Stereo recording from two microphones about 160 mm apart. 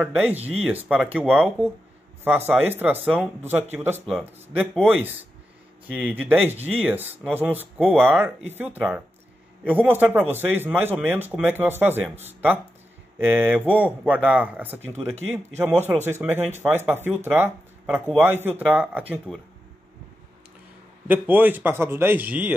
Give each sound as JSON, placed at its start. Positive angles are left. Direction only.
{"t": 0.0, "sound": "speech", "side_deg": -10}
{"t": 1.2, "sound": "speech", "side_deg": 5}
{"t": 2.2, "sound": "speech", "side_deg": -15}
{"t": 5.9, "sound": "speech", "side_deg": -10}
{"t": 21.1, "sound": "speech", "side_deg": -10}